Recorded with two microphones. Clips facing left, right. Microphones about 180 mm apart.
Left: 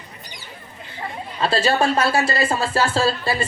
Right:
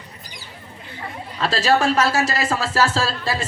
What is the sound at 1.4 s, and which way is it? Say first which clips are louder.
Speech: even; 90° right.